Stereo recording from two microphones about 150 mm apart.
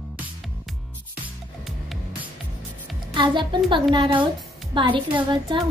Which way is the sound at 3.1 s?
30° right (ahead or behind).